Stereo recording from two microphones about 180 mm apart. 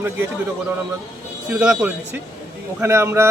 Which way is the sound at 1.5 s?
10° right (ahead or behind).